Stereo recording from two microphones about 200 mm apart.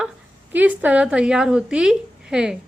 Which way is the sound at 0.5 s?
10° right (ahead or behind).